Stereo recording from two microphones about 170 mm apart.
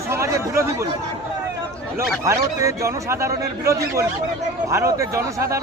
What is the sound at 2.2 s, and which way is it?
A man's voice, 15° right (ahead or behind).